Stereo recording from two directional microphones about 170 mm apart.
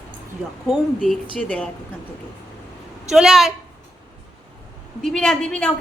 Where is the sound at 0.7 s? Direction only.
Centre (ahead or behind).